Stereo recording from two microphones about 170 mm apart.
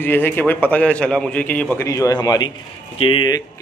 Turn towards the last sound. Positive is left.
turn(degrees=30)  # may be behind; listen again after turning